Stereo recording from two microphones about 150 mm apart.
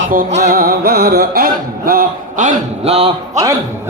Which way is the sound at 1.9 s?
65° right (ahead or behind).